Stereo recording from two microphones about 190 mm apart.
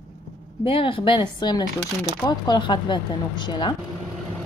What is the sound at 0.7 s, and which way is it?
Speech, 30° left (ahead or behind).